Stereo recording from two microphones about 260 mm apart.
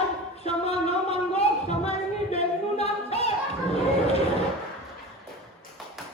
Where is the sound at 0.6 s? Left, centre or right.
Left.